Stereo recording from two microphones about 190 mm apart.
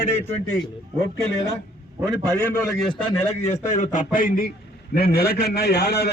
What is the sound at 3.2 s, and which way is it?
A man's voice, 35° left (ahead or behind).